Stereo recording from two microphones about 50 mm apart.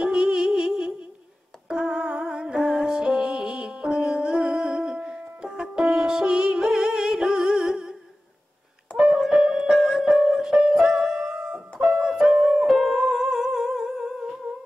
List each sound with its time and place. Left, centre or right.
0.0 s music: centre
5.5 s music: centre
8.9 s music: centre
13.8 s humming: centre